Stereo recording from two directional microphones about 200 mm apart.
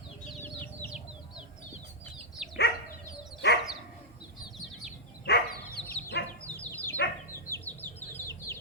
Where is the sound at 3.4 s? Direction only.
60° left (ahead or behind).